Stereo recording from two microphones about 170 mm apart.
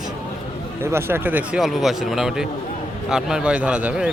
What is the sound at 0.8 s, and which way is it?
A man's voice, 15° right (ahead or behind).